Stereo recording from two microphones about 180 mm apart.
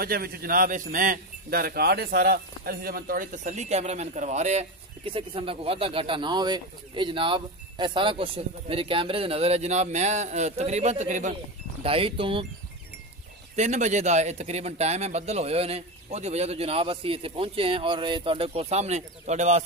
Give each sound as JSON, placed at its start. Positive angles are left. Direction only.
{"t": 0.0, "sound": "speech", "side_deg": -55}
{"t": 11.8, "sound": "speech", "side_deg": -30}
{"t": 13.6, "sound": "speech", "side_deg": -40}